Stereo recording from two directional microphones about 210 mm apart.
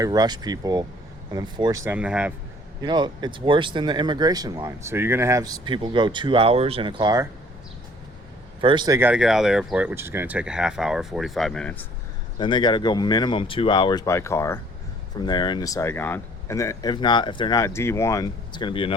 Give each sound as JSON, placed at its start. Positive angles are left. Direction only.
{"t": 0.0, "sound": "speech", "side_deg": -20}
{"t": 2.8, "sound": "speech", "side_deg": -20}
{"t": 8.6, "sound": "speech", "side_deg": -20}
{"t": 9.0, "sound": "speech", "side_deg": -5}
{"t": 12.4, "sound": "speech", "side_deg": 20}